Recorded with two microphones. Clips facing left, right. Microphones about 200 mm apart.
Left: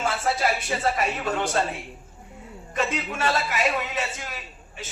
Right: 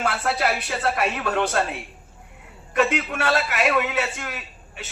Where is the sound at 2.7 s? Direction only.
65° right (ahead or behind).